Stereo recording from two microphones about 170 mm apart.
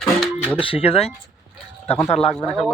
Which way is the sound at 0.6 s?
35° left (ahead or behind).